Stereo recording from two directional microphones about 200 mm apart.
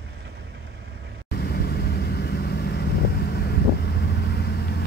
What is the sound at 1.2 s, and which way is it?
Vehicle, 50° left (ahead or behind).